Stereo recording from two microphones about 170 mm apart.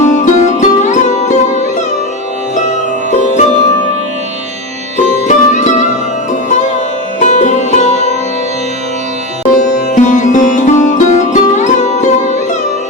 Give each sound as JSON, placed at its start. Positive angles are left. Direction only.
{"t": 0.0, "sound": "music", "side_deg": 45}
{"t": 2.6, "sound": "music", "side_deg": 45}
{"t": 5.3, "sound": "music", "side_deg": 45}
{"t": 7.2, "sound": "music", "side_deg": 45}
{"t": 9.6, "sound": "music", "side_deg": 50}